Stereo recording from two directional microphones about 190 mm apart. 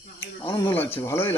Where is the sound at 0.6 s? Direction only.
10° left (ahead or behind).